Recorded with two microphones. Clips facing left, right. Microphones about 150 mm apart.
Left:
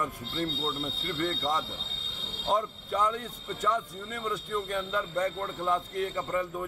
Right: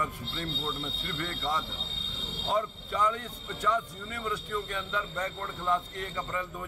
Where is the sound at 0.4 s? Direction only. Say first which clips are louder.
Left 4 dB; 40° left (ahead or behind).